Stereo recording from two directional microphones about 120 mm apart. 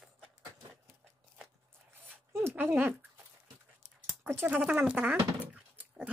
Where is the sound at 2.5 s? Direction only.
15° right (ahead or behind).